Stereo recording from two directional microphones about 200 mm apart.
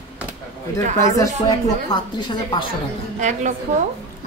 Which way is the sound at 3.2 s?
35° right (ahead or behind).